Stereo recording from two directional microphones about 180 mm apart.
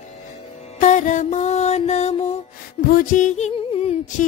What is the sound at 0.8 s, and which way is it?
Music, 45° left (ahead or behind).